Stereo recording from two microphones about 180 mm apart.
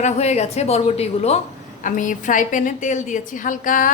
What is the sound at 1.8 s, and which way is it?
A woman's voice, 45° left (ahead or behind).